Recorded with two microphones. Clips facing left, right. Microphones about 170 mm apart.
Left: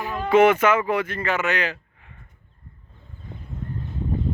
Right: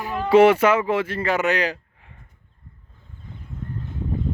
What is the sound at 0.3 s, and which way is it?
Speech, 30° right (ahead or behind).